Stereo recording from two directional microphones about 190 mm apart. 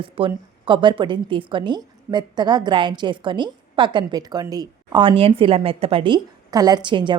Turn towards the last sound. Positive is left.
turn(degrees=-25)  # may be behind; listen again after turning